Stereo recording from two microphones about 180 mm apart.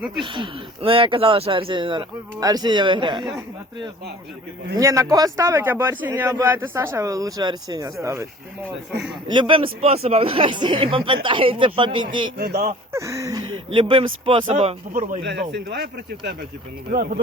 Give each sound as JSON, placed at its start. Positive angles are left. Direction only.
{"t": 0.3, "sound": "speech", "side_deg": -25}
{"t": 4.8, "sound": "speech", "side_deg": -15}
{"t": 9.3, "sound": "speech", "side_deg": -25}
{"t": 15.2, "sound": "speech", "side_deg": -70}
{"t": 16.9, "sound": "speech", "side_deg": -50}